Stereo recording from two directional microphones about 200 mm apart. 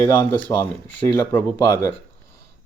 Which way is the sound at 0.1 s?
10° left (ahead or behind).